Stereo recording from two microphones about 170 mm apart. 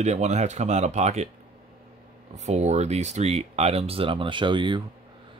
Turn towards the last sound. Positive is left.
turn(degrees=-25)  # may be behind; listen again after turning